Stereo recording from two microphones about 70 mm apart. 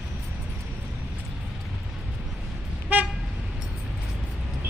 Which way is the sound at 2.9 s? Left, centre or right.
Right.